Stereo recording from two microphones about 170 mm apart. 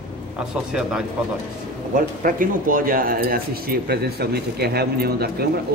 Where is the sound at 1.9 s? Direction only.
55° right (ahead or behind).